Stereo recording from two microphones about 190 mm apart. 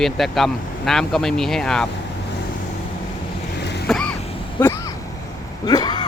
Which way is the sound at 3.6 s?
65° left (ahead or behind).